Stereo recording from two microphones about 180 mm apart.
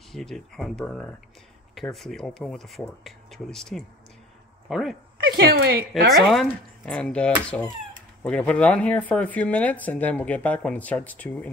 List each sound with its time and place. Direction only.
0.1 s speech: centre (ahead or behind)
5.2 s a woman's voice: 60° right (ahead or behind)
6.1 s speech: centre (ahead or behind)